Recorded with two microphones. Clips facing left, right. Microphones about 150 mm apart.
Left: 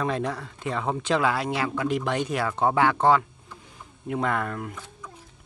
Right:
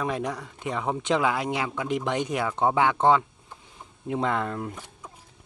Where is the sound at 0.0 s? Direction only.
15° right (ahead or behind).